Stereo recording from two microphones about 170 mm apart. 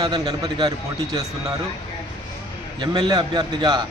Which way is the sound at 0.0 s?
20° right (ahead or behind).